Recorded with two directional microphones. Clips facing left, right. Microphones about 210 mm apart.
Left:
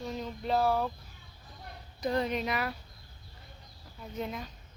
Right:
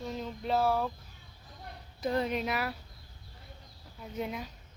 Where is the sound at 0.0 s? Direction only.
Centre (ahead or behind).